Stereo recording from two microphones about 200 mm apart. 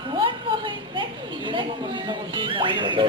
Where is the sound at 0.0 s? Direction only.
25° right (ahead or behind).